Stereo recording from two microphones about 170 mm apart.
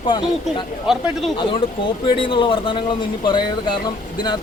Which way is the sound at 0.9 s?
5° right (ahead or behind).